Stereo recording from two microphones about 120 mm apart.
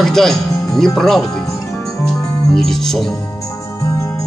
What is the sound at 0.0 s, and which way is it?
Speech, 5° left (ahead or behind).